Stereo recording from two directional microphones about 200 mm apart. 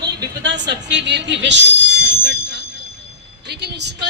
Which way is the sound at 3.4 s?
55° right (ahead or behind).